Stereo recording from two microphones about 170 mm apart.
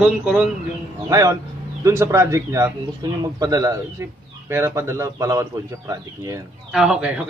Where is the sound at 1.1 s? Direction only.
20° right (ahead or behind).